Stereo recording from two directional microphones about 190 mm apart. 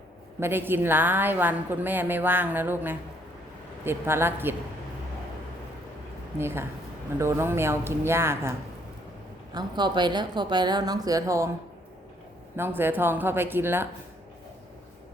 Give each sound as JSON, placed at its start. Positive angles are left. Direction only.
{"t": 0.3, "sound": "a woman's voice", "side_deg": -10}
{"t": 6.4, "sound": "a woman's voice", "side_deg": -10}
{"t": 12.5, "sound": "a woman's voice", "side_deg": -10}